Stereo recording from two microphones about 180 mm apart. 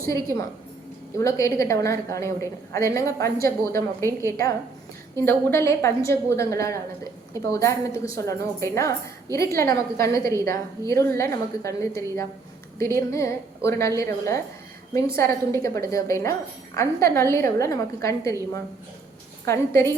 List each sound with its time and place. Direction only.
1.2 s a woman's voice: 15° left (ahead or behind)